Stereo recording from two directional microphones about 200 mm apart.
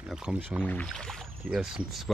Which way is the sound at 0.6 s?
5° left (ahead or behind).